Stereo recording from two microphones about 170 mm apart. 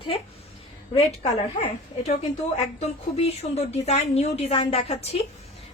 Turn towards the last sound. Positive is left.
turn(degrees=40)  # may be behind; listen again after turning